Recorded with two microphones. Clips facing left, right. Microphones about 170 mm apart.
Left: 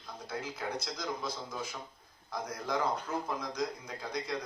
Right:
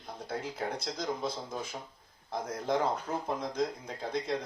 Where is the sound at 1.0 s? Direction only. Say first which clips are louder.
Right 3 dB; 25° right (ahead or behind).